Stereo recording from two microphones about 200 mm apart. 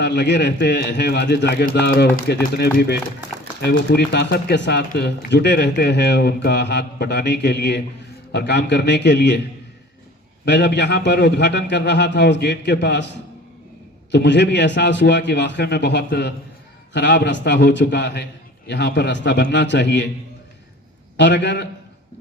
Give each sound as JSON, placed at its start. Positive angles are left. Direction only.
{"t": 0.0, "sound": "speech", "side_deg": 60}
{"t": 10.4, "sound": "speech", "side_deg": 60}
{"t": 21.2, "sound": "speech", "side_deg": 60}